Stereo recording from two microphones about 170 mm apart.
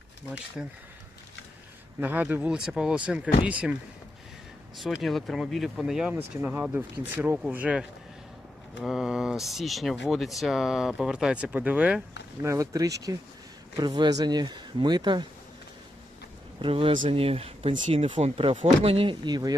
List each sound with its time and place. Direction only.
0.6 s speech: 5° right (ahead or behind)
2.0 s speech: 10° right (ahead or behind)
5.0 s speech: centre (ahead or behind)
12.4 s speech: 20° right (ahead or behind)
16.6 s speech: 30° right (ahead or behind)